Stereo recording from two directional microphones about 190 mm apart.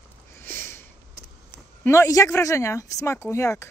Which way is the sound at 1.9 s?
15° left (ahead or behind).